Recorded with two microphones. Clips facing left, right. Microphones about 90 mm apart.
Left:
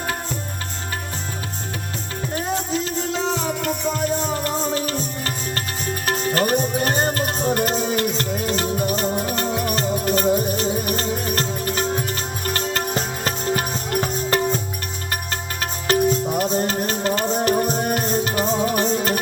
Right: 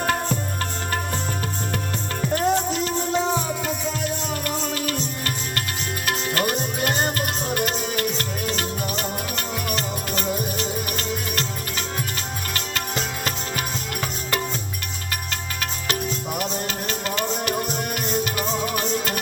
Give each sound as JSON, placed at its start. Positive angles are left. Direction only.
{"t": 4.3, "sound": "music", "side_deg": 30}
{"t": 15.6, "sound": "music", "side_deg": 35}